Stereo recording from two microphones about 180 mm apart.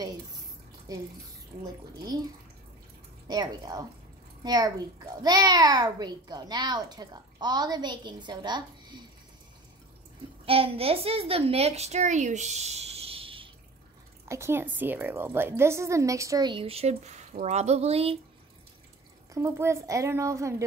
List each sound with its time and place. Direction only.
0.9 s a child's voice: 20° right (ahead or behind)
3.3 s a child's voice: 20° right (ahead or behind)
10.4 s a child's voice: 30° right (ahead or behind)
14.2 s a woman's voice: 15° right (ahead or behind); by 18.2 s 35° right (ahead or behind)
19.3 s a woman's voice: 15° right (ahead or behind)